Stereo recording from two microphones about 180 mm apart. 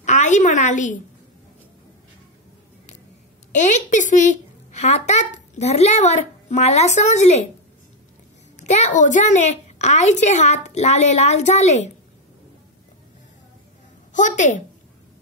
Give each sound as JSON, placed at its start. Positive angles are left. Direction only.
{"t": 0.0, "sound": "a woman's voice", "side_deg": 40}
{"t": 3.5, "sound": "a woman's voice", "side_deg": 45}
{"t": 8.5, "sound": "a woman's voice", "side_deg": 40}
{"t": 14.1, "sound": "a woman's voice", "side_deg": 45}